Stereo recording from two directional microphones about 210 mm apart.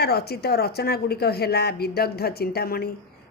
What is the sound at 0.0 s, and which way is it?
A woman's voice, 50° left (ahead or behind).